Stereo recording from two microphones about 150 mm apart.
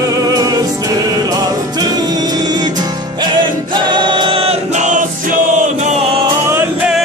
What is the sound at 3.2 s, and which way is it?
Choir, 30° right (ahead or behind).